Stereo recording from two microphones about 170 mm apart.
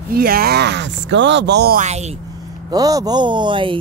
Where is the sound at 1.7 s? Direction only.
40° right (ahead or behind).